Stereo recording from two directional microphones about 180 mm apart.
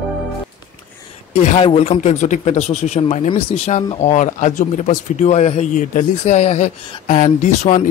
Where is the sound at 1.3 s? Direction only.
35° left (ahead or behind).